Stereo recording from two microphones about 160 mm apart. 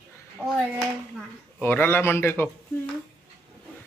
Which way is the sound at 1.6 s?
15° left (ahead or behind).